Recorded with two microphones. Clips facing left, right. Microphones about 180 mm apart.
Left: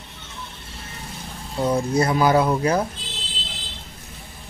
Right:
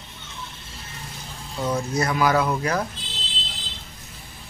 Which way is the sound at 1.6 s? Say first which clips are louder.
Left 4 dB; 30° left (ahead or behind).